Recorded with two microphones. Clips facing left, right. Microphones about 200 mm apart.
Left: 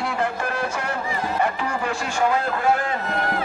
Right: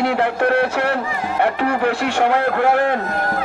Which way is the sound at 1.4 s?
65° right (ahead or behind).